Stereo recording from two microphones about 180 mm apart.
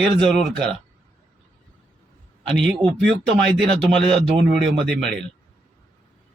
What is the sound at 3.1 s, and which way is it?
Speech, 75° right (ahead or behind).